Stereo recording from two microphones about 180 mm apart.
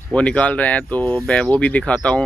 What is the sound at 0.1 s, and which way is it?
Speech, 5° left (ahead or behind).